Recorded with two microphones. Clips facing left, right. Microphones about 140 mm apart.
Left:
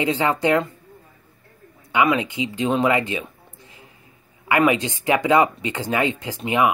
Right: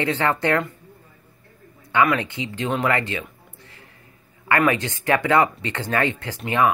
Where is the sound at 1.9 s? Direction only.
15° left (ahead or behind).